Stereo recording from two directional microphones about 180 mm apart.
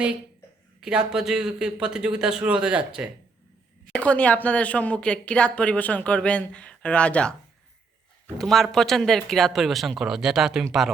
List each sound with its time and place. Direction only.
0.8 s a man's voice: 5° right (ahead or behind)
3.9 s a woman's voice: 5° left (ahead or behind)
8.4 s a man's voice: centre (ahead or behind)